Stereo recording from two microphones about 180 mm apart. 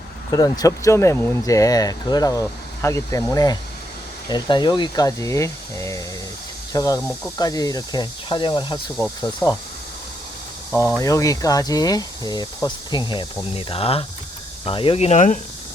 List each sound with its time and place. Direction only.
0.3 s speech: 20° left (ahead or behind)
10.7 s speech: 10° left (ahead or behind); by 15.4 s 40° left (ahead or behind)